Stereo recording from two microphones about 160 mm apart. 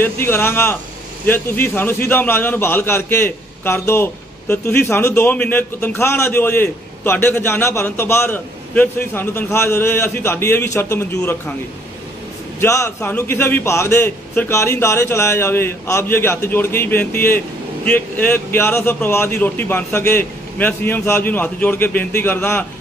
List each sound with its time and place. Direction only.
0.0 s a man's voice: 15° left (ahead or behind)
12.5 s a man's voice: 20° left (ahead or behind)